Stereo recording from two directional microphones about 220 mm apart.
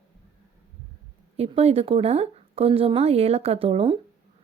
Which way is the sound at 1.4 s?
30° right (ahead or behind).